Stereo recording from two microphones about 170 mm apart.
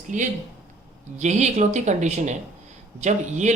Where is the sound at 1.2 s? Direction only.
45° right (ahead or behind).